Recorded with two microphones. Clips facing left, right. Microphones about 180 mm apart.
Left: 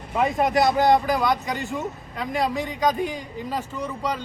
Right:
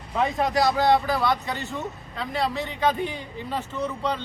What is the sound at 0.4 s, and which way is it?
Speech, 20° left (ahead or behind).